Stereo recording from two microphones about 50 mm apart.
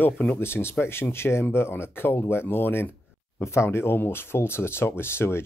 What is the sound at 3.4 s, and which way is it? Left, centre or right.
Speech, left.